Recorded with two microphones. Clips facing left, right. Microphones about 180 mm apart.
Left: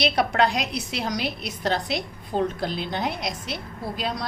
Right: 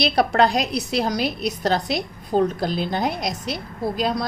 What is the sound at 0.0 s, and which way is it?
A woman's voice, 35° right (ahead or behind).